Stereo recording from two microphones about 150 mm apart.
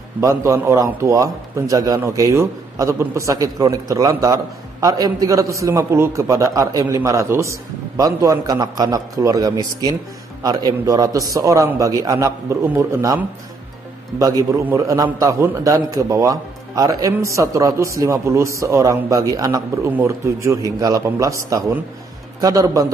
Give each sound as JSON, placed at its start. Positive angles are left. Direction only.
{"t": 0.2, "sound": "a man's voice", "side_deg": -20}